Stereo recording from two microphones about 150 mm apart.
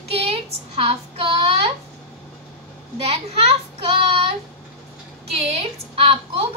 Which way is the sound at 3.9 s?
40° right (ahead or behind).